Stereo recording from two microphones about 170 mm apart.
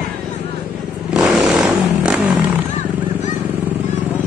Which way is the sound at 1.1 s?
Centre (ahead or behind).